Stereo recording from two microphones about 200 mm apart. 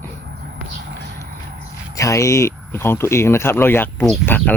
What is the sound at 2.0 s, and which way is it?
Speech, 15° left (ahead or behind).